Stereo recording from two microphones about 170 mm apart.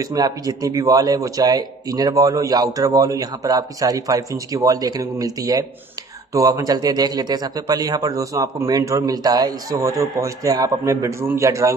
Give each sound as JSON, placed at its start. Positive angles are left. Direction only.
{"t": 0.0, "sound": "a man's voice", "side_deg": -20}